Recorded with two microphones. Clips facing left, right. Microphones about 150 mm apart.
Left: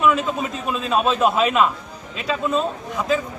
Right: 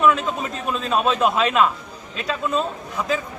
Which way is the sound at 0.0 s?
5° left (ahead or behind).